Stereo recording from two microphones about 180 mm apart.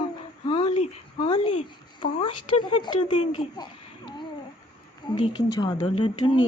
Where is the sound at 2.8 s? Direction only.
25° left (ahead or behind).